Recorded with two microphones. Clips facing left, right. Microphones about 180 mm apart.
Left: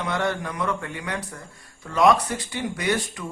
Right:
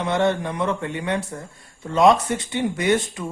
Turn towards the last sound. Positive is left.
turn(degrees=-25)  # may be behind; listen again after turning